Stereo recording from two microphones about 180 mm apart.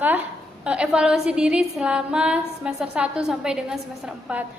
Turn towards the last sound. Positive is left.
turn(degrees=-5)  # may be behind; listen again after turning